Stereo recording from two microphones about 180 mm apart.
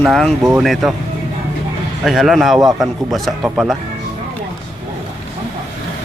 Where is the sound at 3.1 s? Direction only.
5° right (ahead or behind).